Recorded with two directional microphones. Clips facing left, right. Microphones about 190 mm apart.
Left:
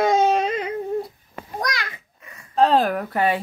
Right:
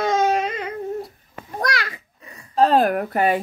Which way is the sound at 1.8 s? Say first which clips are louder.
Right 2 dB; 35° right (ahead or behind).